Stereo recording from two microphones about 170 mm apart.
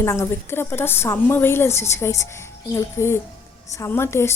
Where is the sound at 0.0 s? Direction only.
15° left (ahead or behind).